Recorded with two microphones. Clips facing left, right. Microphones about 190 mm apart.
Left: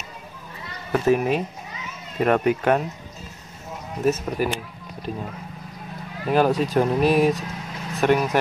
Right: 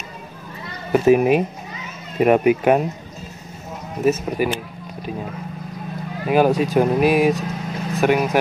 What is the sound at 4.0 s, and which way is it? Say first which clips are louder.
Speech: right 3 dB; 5° right (ahead or behind).